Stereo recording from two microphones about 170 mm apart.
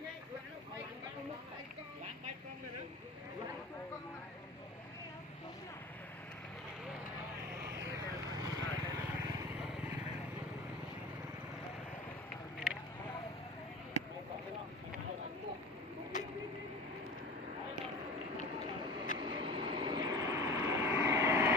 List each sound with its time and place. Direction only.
7.5 s vehicle: 15° right (ahead or behind)
19.1 s vehicle: 30° right (ahead or behind)